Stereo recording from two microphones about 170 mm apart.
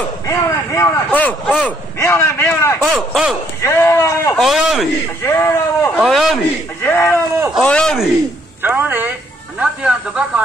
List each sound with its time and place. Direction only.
0.3 s speech: 15° left (ahead or behind)
2.8 s a man's voice: centre (ahead or behind)
3.6 s speech: 15° left (ahead or behind)
4.4 s a man's voice: centre (ahead or behind)
5.2 s speech: 15° left (ahead or behind)
5.9 s a man's voice: centre (ahead or behind)
6.9 s a man's voice: 15° left (ahead or behind)
8.6 s speech: 10° right (ahead or behind)